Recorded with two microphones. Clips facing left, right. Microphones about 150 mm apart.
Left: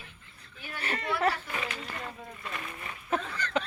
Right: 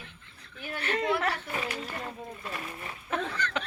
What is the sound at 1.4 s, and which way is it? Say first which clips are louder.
Speech: right 2 dB; 40° right (ahead or behind).